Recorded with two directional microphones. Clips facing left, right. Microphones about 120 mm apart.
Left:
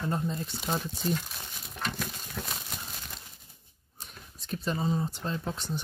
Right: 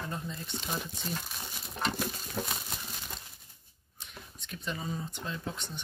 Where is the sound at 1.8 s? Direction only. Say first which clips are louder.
Right 2 dB; 20° right (ahead or behind).